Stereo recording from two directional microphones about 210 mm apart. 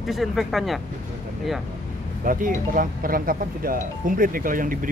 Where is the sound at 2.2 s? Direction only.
40° right (ahead or behind).